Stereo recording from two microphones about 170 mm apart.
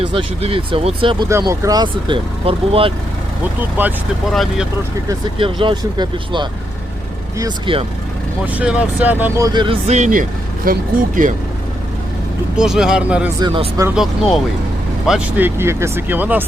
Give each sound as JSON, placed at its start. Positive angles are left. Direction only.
{"t": 0.1, "sound": "speech", "side_deg": -30}
{"t": 1.3, "sound": "speech", "side_deg": -20}
{"t": 3.6, "sound": "speech", "side_deg": -10}
{"t": 5.4, "sound": "speech", "side_deg": -30}
{"t": 7.7, "sound": "speech", "side_deg": -30}
{"t": 8.4, "sound": "speech", "side_deg": -10}
{"t": 9.8, "sound": "speech", "side_deg": -45}
{"t": 12.5, "sound": "speech", "side_deg": -5}
{"t": 13.4, "sound": "speech", "side_deg": -30}
{"t": 13.9, "sound": "speech", "side_deg": 0}